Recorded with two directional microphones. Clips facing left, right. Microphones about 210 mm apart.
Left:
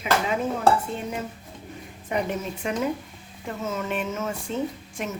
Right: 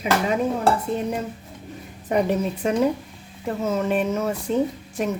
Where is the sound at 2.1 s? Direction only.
40° right (ahead or behind).